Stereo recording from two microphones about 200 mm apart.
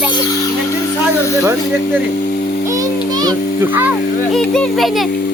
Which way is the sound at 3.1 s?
20° right (ahead or behind).